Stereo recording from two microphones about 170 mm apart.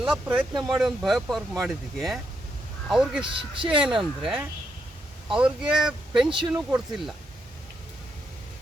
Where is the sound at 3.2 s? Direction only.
30° right (ahead or behind).